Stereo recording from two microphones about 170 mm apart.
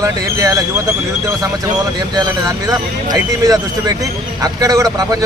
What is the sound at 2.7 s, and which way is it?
Speech, 20° right (ahead or behind).